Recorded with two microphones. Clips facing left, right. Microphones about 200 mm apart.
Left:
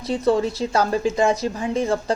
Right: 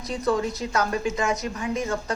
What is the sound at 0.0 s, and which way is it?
A woman's voice, 30° left (ahead or behind).